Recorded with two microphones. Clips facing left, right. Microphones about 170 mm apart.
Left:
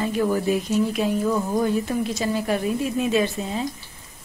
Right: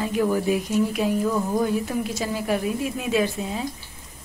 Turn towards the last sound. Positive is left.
turn(degrees=-5)  # may be behind; listen again after turning